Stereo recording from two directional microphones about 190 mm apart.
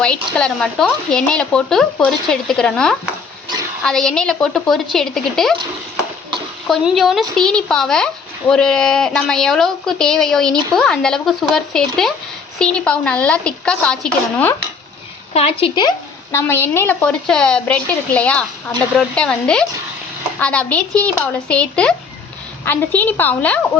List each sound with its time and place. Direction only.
0.0 s speech: 5° left (ahead or behind)
6.7 s a woman's voice: centre (ahead or behind)
15.3 s a woman's voice: 30° left (ahead or behind)
16.3 s a woman's voice: 10° left (ahead or behind)